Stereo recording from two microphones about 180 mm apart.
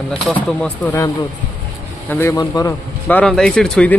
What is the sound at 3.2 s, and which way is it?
Speech, centre (ahead or behind).